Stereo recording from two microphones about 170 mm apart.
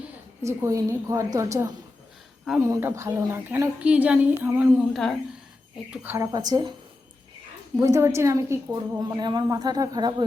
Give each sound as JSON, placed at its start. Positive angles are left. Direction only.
{"t": 0.4, "sound": "a woman's voice", "side_deg": -15}
{"t": 5.9, "sound": "a woman's voice", "side_deg": -10}
{"t": 7.8, "sound": "a woman's voice", "side_deg": -15}